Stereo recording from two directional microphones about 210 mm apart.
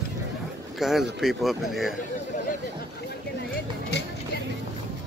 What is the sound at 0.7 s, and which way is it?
Speech, centre (ahead or behind).